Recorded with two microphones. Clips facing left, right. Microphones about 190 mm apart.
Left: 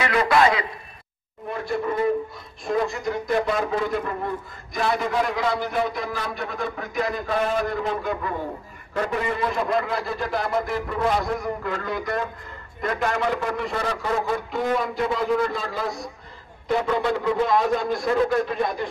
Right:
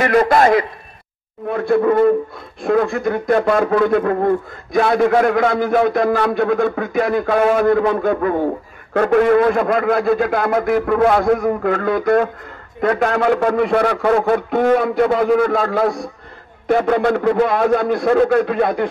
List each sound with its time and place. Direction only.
0.0 s a man's voice: 50° right (ahead or behind)
1.5 s a man's voice: 60° right (ahead or behind)